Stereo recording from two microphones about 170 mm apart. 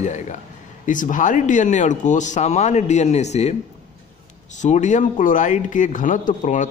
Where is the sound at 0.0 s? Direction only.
45° left (ahead or behind).